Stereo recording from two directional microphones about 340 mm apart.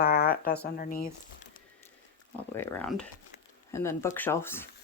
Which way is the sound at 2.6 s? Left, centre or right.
Centre.